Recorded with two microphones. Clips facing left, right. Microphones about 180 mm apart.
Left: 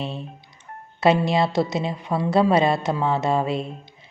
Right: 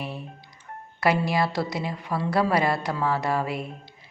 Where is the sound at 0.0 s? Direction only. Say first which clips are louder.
Left 4 dB; 25° left (ahead or behind).